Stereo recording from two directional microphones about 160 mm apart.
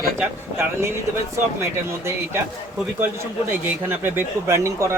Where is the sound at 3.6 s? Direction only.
10° right (ahead or behind).